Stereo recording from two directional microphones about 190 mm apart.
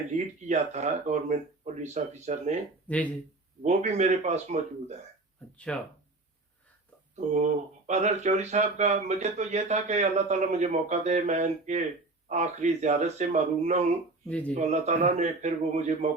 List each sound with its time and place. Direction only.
0.4 s speech: 35° right (ahead or behind)
2.8 s speech: 5° left (ahead or behind)
3.6 s speech: 35° right (ahead or behind)
5.5 s speech: 5° left (ahead or behind)
7.3 s speech: 35° right (ahead or behind)
14.3 s speech: 5° left (ahead or behind)
14.5 s speech: 35° right (ahead or behind)